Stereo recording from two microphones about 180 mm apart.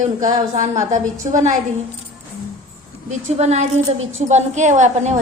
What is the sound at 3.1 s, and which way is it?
A woman's voice, 40° right (ahead or behind).